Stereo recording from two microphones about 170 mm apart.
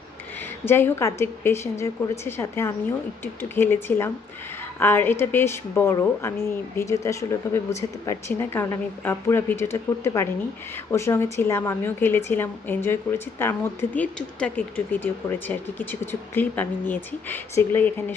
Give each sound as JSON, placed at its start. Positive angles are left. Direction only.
{"t": 0.6, "sound": "a woman's voice", "side_deg": 15}